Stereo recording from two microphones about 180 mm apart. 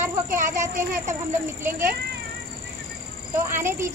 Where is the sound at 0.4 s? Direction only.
15° right (ahead or behind).